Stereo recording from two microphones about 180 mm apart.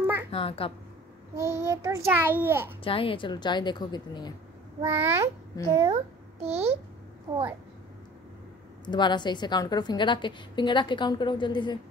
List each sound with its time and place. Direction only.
0.3 s a child's voice: 30° left (ahead or behind)
1.3 s a child's voice: 15° right (ahead or behind)
2.8 s a woman's voice: 30° left (ahead or behind)
4.8 s a child's voice: 15° right (ahead or behind)
6.4 s a child's voice: 35° right (ahead or behind)
8.8 s a woman's voice: 25° left (ahead or behind)